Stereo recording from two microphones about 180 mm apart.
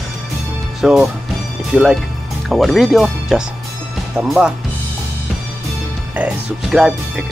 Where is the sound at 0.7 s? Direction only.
Centre (ahead or behind).